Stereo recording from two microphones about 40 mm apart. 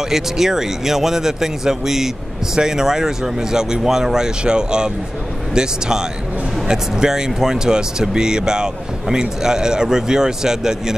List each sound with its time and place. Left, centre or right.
0.1 s speech: centre